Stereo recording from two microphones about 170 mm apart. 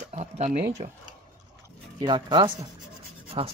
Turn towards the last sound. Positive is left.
turn(degrees=-30)  # may be behind; listen again after turning